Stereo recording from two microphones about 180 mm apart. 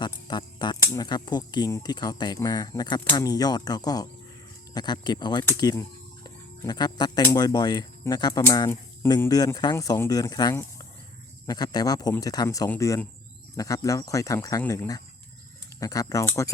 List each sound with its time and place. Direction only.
0.0 s speech: 25° left (ahead or behind)